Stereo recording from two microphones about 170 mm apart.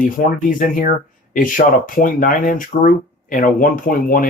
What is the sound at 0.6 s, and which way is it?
Speech, 55° left (ahead or behind).